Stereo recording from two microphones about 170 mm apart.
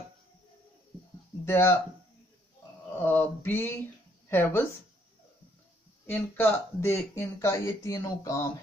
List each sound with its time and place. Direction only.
1.4 s speech: 15° left (ahead or behind)
3.0 s speech: 10° left (ahead or behind)
6.0 s speech: 10° left (ahead or behind)